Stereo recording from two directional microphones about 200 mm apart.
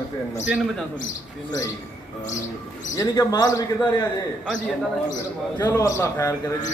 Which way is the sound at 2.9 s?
15° left (ahead or behind).